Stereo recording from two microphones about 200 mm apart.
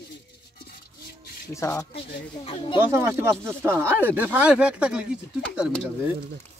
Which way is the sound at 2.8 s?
15° right (ahead or behind).